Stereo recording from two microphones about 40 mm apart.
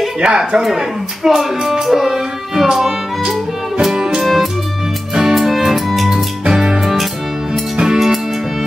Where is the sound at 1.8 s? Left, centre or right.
Centre.